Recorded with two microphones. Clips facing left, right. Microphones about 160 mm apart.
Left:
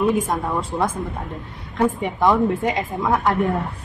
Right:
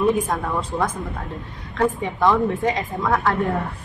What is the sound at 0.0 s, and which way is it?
A woman's voice, 10° left (ahead or behind).